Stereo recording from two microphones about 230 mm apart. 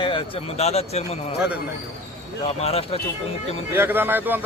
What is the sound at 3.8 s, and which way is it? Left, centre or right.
Speech, centre.